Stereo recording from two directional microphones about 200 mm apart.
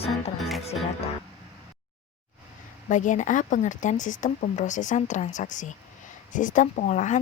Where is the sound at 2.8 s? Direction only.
40° left (ahead or behind).